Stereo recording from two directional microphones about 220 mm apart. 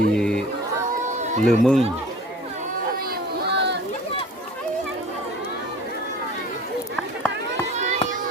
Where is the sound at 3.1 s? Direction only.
50° right (ahead or behind).